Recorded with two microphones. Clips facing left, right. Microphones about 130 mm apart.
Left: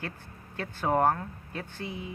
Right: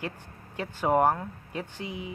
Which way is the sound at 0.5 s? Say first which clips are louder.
Right 3 dB; 15° right (ahead or behind).